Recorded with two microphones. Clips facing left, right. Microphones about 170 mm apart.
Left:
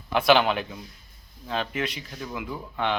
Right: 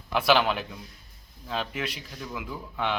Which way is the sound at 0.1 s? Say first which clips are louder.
Left 3 dB; 5° right (ahead or behind).